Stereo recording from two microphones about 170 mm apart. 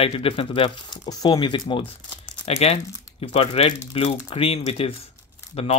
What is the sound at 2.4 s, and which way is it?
Speech, 40° left (ahead or behind).